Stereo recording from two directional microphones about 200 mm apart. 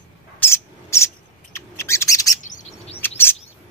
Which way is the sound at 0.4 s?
15° left (ahead or behind).